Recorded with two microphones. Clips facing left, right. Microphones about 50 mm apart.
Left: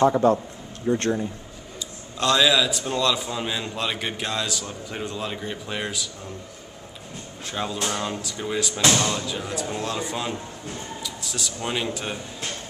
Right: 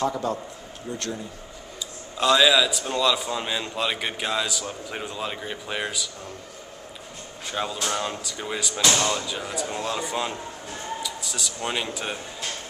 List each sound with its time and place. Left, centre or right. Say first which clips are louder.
0.0 s speech: left 8 dB; left
2.1 s a man's voice: right 1 dB; centre
7.4 s a man's voice: even; centre